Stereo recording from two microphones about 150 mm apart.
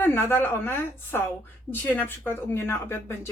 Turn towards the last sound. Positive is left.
turn(degrees=15)  # may be behind; listen again after turning